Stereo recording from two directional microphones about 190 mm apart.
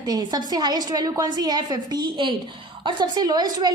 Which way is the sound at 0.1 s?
20° right (ahead or behind).